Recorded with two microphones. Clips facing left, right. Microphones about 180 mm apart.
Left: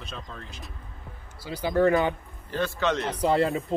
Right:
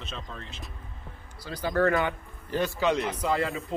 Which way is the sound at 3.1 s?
35° left (ahead or behind).